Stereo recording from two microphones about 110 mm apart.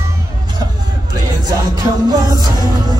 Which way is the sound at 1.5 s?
35° right (ahead or behind).